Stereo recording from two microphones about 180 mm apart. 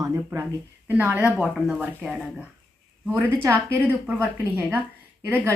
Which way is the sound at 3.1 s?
10° right (ahead or behind).